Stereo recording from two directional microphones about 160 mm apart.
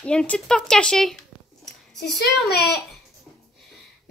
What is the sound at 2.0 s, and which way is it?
Speech, 90° left.